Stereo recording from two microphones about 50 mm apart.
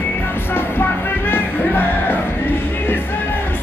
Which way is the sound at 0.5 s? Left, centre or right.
Left.